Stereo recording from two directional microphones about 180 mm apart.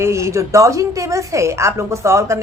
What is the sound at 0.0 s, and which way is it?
A woman's voice, 15° right (ahead or behind).